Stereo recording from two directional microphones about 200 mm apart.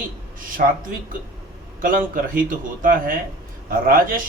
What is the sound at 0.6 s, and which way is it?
Speech, 45° right (ahead or behind).